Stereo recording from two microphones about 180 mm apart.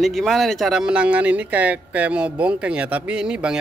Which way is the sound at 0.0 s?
Centre (ahead or behind).